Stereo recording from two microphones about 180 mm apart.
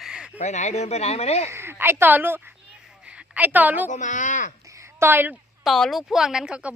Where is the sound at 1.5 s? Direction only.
15° right (ahead or behind).